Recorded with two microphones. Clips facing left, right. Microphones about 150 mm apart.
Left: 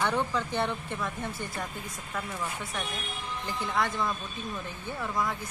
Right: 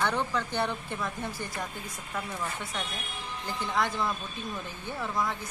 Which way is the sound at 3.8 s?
Centre (ahead or behind).